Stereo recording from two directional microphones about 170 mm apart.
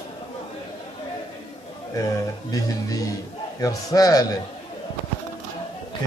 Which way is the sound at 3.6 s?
20° left (ahead or behind).